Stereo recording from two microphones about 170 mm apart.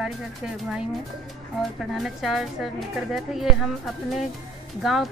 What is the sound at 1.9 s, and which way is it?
Speech, centre (ahead or behind).